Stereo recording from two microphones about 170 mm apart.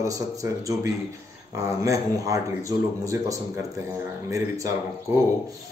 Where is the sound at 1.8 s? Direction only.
20° right (ahead or behind).